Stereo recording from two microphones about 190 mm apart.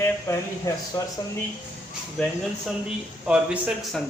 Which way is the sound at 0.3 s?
15° left (ahead or behind).